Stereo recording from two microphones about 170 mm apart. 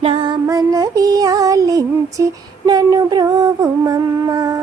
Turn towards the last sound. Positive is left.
turn(degrees=-20)  # may be behind; listen again after turning